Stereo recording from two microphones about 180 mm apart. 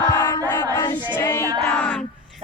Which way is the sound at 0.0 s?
15° left (ahead or behind).